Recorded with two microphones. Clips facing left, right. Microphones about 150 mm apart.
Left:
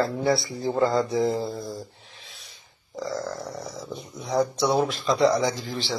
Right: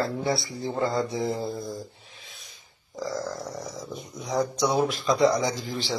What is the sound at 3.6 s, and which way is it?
Speech, centre (ahead or behind).